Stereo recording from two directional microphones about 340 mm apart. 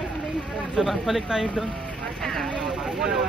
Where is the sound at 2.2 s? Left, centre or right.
Centre.